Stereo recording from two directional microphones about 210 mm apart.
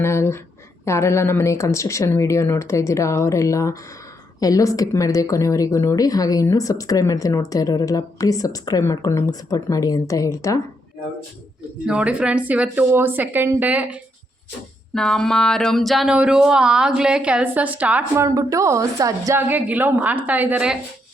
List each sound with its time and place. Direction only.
0.0 s speech: 15° left (ahead or behind)
11.9 s speech: 5° right (ahead or behind)